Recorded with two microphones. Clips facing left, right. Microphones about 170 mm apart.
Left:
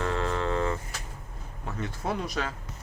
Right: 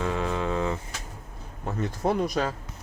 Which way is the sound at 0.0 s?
15° right (ahead or behind).